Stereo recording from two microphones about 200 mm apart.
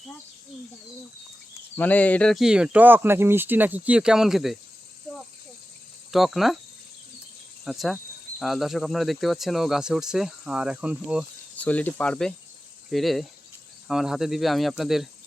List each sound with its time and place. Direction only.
1.7 s speech: 10° left (ahead or behind)
6.1 s speech: centre (ahead or behind)
7.6 s cricket: centre (ahead or behind)
8.4 s speech: centre (ahead or behind)
11.6 s speech: 10° left (ahead or behind)